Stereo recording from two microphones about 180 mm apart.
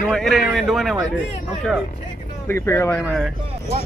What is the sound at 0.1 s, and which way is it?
Speech, centre (ahead or behind).